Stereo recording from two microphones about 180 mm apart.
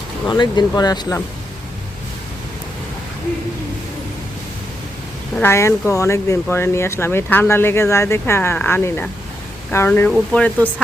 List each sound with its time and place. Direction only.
0.3 s speech: 25° left (ahead or behind)
5.3 s speech: 10° left (ahead or behind)